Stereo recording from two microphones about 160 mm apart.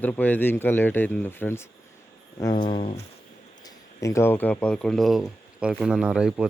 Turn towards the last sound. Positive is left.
turn(degrees=-5)  # may be behind; listen again after turning